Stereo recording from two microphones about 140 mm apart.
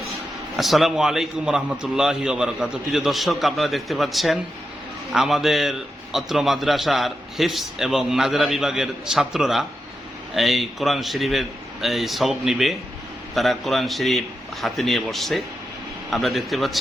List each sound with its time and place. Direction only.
0.5 s a man's voice: centre (ahead or behind)